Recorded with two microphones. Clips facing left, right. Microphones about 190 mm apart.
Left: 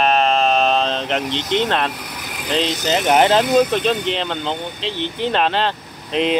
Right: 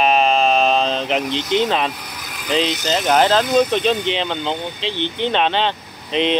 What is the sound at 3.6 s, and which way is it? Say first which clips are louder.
Speech: even; centre (ahead or behind).